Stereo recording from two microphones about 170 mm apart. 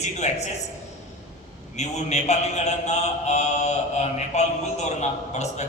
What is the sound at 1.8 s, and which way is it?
A man's voice, 40° left (ahead or behind).